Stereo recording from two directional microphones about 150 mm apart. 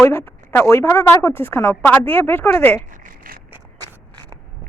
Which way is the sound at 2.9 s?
60° right (ahead or behind).